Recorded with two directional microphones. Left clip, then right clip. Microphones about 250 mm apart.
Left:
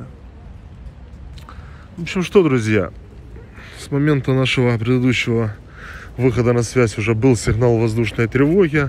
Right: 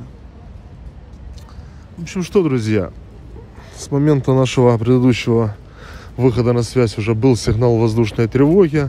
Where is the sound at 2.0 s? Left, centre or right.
Centre.